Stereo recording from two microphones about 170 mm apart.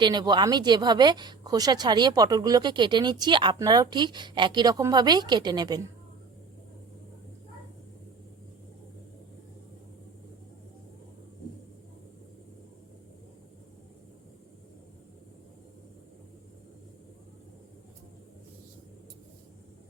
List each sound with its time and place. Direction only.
0.0 s speech: 25° right (ahead or behind)